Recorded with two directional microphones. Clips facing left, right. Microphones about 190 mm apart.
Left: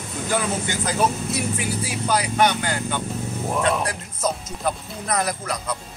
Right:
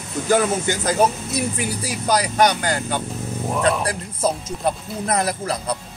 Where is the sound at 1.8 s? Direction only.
40° right (ahead or behind).